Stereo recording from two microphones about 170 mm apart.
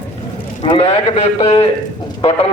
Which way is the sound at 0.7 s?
35° left (ahead or behind).